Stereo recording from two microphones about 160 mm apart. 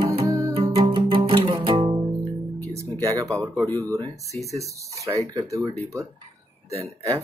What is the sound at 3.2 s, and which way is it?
Speech, 20° right (ahead or behind).